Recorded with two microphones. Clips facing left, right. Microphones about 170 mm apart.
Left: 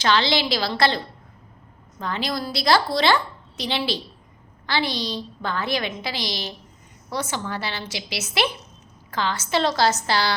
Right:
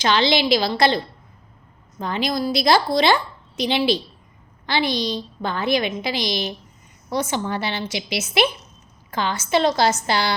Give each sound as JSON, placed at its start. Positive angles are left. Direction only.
{"t": 0.0, "sound": "a woman's voice", "side_deg": -15}